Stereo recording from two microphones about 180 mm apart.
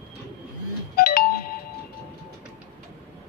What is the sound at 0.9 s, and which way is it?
Music, 55° left (ahead or behind).